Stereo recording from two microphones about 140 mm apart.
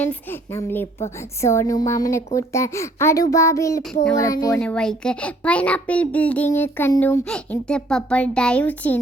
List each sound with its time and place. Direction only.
0.0 s a child's voice: 15° left (ahead or behind)
4.6 s a child's voice: 5° left (ahead or behind)
7.3 s a child's voice: 5° left (ahead or behind)